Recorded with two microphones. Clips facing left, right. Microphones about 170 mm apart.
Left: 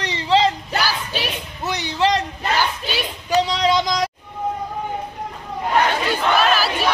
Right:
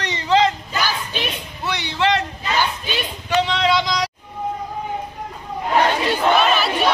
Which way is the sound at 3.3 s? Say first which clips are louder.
Left 1 dB; 35° left (ahead or behind).